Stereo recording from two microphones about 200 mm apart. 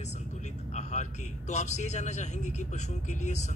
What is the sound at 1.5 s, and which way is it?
A man's voice, 35° left (ahead or behind).